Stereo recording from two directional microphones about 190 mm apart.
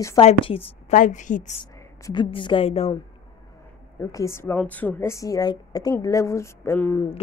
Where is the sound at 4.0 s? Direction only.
15° left (ahead or behind).